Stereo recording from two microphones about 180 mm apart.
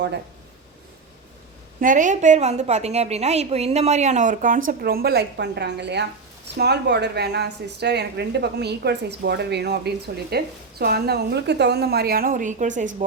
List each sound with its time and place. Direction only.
1.8 s a woman's voice: 45° right (ahead or behind)